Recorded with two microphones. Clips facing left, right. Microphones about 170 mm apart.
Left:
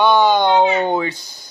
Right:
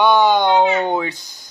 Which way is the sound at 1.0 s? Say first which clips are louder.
Left 2 dB; 20° right (ahead or behind).